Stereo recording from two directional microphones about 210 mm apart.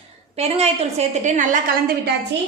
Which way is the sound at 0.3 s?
30° right (ahead or behind).